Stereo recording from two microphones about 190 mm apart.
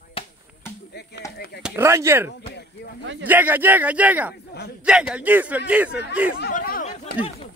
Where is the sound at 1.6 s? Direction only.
15° right (ahead or behind).